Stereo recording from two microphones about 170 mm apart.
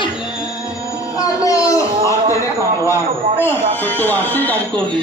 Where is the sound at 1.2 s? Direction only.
20° left (ahead or behind).